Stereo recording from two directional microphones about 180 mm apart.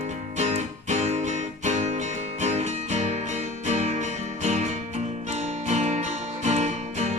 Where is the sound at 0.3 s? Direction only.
40° right (ahead or behind).